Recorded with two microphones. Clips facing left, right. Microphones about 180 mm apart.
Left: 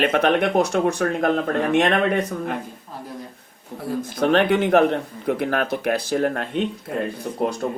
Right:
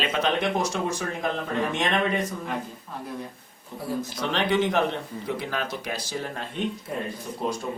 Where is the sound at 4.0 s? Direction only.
55° left (ahead or behind).